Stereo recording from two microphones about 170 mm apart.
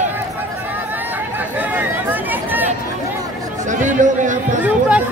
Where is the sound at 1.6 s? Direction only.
10° right (ahead or behind).